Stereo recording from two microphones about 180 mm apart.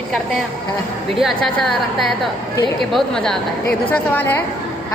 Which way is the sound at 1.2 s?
Centre (ahead or behind).